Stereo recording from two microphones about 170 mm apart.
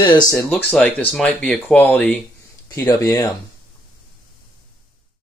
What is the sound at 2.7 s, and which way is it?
Speech, 20° left (ahead or behind).